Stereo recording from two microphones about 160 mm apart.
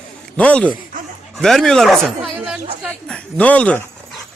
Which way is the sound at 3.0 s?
5° left (ahead or behind).